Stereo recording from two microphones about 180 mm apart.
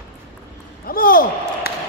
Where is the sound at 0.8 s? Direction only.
55° left (ahead or behind).